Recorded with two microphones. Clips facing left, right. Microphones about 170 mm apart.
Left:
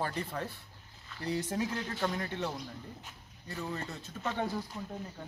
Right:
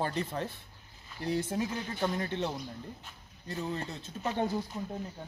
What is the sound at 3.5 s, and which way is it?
Speech, 20° right (ahead or behind).